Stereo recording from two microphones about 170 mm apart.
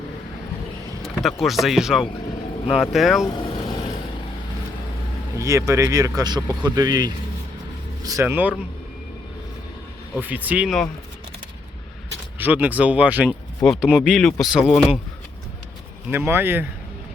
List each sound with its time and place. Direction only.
1.4 s speech: centre (ahead or behind)
3.2 s vehicle: 25° left (ahead or behind)
5.4 s speech: 15° right (ahead or behind)
10.2 s speech: 10° right (ahead or behind)
12.4 s speech: 10° right (ahead or behind)
16.0 s speech: 15° right (ahead or behind)